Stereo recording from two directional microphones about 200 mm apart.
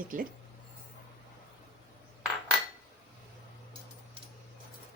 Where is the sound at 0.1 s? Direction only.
40° right (ahead or behind).